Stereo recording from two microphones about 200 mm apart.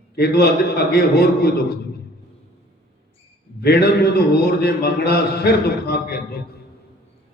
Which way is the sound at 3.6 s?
55° left (ahead or behind).